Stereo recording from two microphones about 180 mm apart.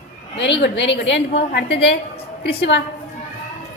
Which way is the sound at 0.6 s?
80° left.